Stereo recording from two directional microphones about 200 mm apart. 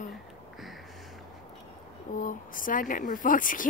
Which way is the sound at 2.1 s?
40° left (ahead or behind).